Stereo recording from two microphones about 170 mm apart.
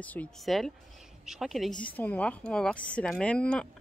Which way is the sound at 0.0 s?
10° left (ahead or behind).